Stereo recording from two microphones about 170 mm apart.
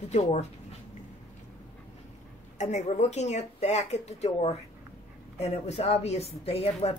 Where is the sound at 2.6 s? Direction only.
45° left (ahead or behind).